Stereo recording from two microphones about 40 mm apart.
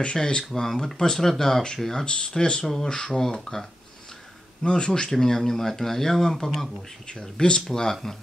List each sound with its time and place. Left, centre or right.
0.0 s speech: left
2.0 s speech: left; by 3.6 s centre
4.6 s speech: left
5.1 s speech: centre
7.1 s speech: centre